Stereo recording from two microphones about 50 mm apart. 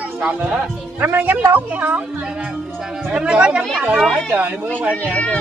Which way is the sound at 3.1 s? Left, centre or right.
Right.